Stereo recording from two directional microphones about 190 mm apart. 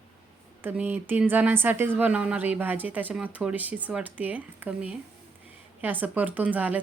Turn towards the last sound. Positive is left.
turn(degrees=-10)  # may be behind; listen again after turning